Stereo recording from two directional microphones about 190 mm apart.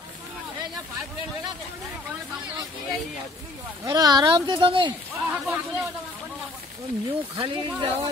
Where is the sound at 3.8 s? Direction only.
20° right (ahead or behind).